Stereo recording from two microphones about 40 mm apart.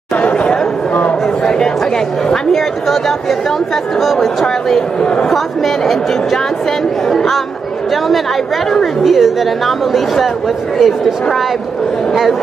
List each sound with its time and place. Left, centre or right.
0.2 s chatter: left
1.4 s a man's voice: centre
2.9 s a woman's voice: centre
5.0 s a woman's voice: left
5.3 s a woman's voice: centre
9.0 s a woman's voice: centre